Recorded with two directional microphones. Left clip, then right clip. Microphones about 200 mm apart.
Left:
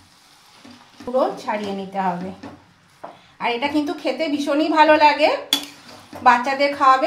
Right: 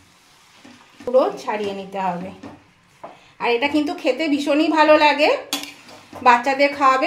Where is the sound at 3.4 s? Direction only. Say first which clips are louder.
Right 2 dB; 45° right (ahead or behind).